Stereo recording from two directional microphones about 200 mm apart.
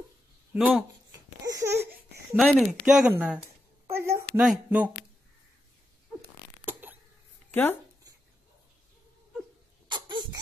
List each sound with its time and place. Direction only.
0.6 s speech: centre (ahead or behind)
1.4 s laughter: 15° right (ahead or behind)
2.3 s speech: centre (ahead or behind)
3.9 s a sound: 15° right (ahead or behind)
4.5 s speech: 5° right (ahead or behind)
6.6 s cough: 10° right (ahead or behind)
9.8 s a sound: 25° right (ahead or behind)